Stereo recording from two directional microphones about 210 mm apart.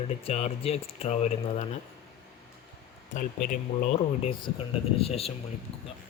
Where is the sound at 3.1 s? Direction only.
40° left (ahead or behind).